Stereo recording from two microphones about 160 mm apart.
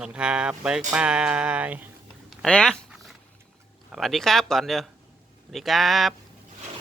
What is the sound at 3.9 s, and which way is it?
Speech, centre (ahead or behind).